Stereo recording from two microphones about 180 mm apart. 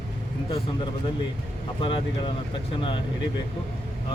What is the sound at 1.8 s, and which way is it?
Speech, 30° left (ahead or behind).